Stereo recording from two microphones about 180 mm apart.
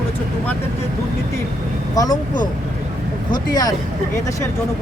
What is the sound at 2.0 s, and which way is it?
Speech, 20° left (ahead or behind).